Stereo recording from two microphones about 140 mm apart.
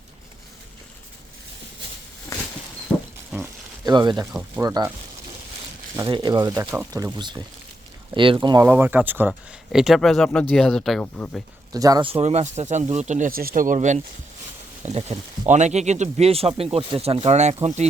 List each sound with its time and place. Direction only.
2.9 s a sound: 10° left (ahead or behind)
3.4 s speech: 30° right (ahead or behind)
4.3 s speech: 5° right (ahead or behind)
4.6 s speech: 25° right (ahead or behind)
6.1 s speech: 30° right (ahead or behind)
8.6 s speech: 15° right (ahead or behind)
9.7 s speech: centre (ahead or behind)
11.7 s speech: 25° right (ahead or behind)
12.0 s speech: 50° right (ahead or behind); by 13.7 s 80° right
13.7 s speech: 60° right (ahead or behind)